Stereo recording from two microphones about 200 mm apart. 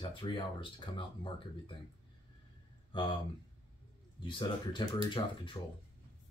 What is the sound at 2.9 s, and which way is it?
Speech, 25° left (ahead or behind).